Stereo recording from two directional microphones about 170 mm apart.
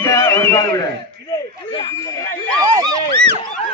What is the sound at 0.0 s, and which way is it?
Music, 15° left (ahead or behind).